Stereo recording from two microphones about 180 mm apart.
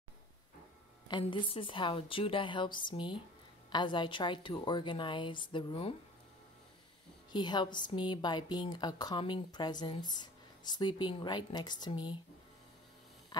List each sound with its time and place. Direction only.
1.0 s a woman's voice: 25° left (ahead or behind)
7.3 s a woman's voice: 25° left (ahead or behind)
13.3 s a sound: 25° left (ahead or behind)